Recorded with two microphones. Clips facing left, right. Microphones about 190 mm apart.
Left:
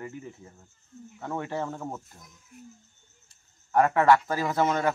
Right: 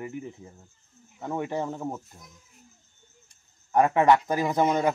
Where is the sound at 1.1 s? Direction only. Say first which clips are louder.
Right 2 dB; 15° right (ahead or behind).